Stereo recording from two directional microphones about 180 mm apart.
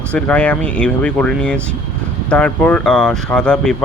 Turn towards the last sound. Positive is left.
turn(degrees=5)  # may be behind; listen again after turning